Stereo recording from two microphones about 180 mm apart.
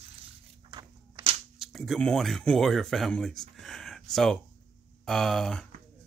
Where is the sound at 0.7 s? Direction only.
25° right (ahead or behind).